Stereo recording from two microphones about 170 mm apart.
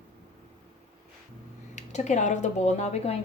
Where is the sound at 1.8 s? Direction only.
45° left (ahead or behind).